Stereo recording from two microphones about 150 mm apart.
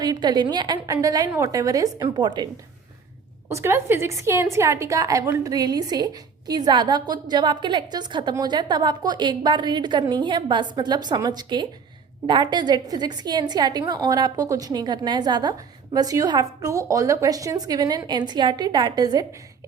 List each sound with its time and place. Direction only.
0.0 s a woman's voice: 25° right (ahead or behind)
3.5 s a woman's voice: 15° right (ahead or behind)